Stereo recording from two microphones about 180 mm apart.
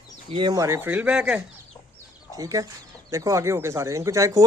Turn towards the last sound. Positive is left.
turn(degrees=-15)  # may be behind; listen again after turning